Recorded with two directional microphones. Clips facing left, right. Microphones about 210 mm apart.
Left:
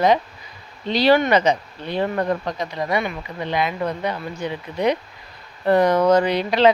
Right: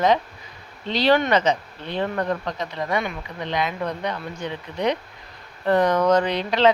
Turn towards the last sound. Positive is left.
turn(degrees=10)  # may be behind; listen again after turning